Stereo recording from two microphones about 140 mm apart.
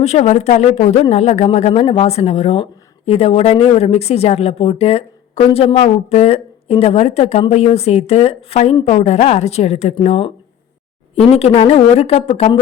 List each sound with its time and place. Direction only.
0.0 s speech: 55° left (ahead or behind)